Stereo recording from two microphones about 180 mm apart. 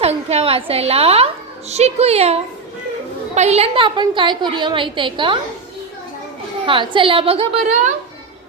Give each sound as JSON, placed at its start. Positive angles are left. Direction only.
{"t": 0.0, "sound": "a woman's voice", "side_deg": -35}
{"t": 6.7, "sound": "a woman's voice", "side_deg": -30}